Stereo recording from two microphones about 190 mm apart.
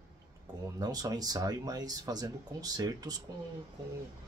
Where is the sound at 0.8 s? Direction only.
20° right (ahead or behind).